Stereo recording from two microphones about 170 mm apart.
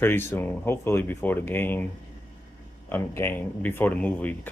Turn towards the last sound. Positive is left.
turn(degrees=10)  # may be behind; listen again after turning